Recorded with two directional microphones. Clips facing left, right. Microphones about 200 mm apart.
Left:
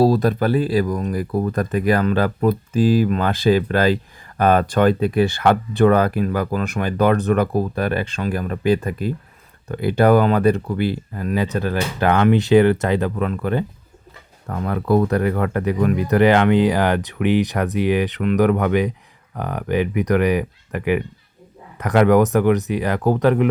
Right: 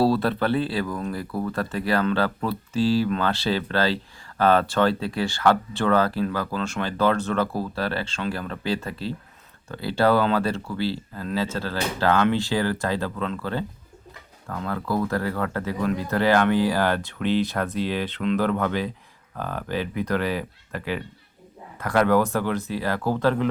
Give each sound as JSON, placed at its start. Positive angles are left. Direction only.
{"t": 0.2, "sound": "speech", "side_deg": 15}